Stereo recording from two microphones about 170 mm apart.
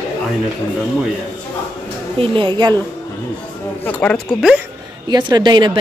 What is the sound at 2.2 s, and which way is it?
Speech, 30° right (ahead or behind).